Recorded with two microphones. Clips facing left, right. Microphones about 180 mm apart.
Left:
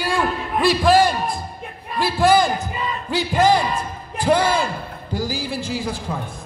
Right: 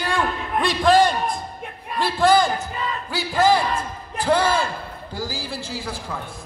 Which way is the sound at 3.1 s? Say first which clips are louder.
Left 2 dB; 20° left (ahead or behind).